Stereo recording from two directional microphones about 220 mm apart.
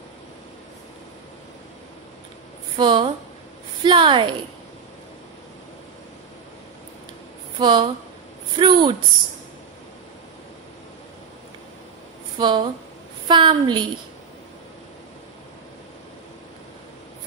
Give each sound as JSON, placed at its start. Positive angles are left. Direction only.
{"t": 2.8, "sound": "a woman's voice", "side_deg": -20}
{"t": 7.5, "sound": "a woman's voice", "side_deg": -20}
{"t": 12.4, "sound": "a woman's voice", "side_deg": -20}